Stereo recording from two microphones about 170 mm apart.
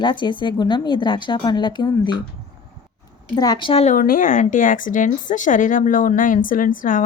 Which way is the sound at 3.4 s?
25° left (ahead or behind).